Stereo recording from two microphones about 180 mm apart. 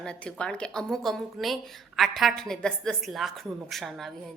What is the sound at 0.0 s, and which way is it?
A woman's voice, 5° left (ahead or behind).